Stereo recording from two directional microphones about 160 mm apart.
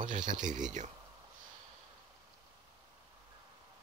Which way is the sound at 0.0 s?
55° right (ahead or behind).